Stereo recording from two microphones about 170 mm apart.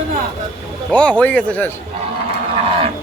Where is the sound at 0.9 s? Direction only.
10° left (ahead or behind).